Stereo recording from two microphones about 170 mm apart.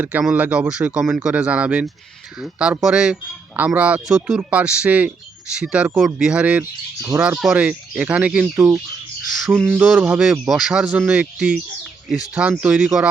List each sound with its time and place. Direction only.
0.0 s speech: 10° right (ahead or behind)
9.6 s speech: centre (ahead or behind)